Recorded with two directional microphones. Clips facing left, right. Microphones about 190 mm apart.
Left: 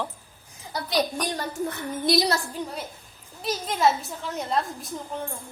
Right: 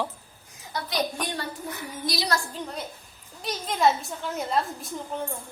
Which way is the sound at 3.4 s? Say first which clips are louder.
Even; centre (ahead or behind).